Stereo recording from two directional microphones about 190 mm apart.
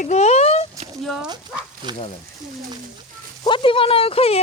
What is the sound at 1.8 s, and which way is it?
Speech, 25° right (ahead or behind).